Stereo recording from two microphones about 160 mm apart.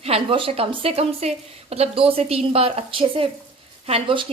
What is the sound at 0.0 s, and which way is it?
A woman's voice, 35° right (ahead or behind).